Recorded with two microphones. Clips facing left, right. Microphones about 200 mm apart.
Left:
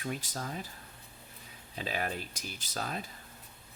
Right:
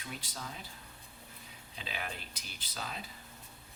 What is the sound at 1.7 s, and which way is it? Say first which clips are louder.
Speech: left 7 dB; 45° left (ahead or behind).